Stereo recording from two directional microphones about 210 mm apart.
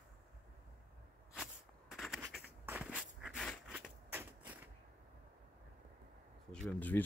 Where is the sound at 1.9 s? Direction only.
Centre (ahead or behind).